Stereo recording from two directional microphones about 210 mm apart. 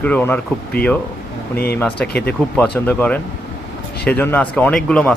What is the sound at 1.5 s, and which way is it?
Speech, 50° left (ahead or behind).